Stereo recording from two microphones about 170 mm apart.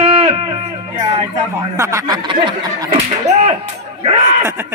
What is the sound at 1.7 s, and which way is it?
Speech, 15° right (ahead or behind).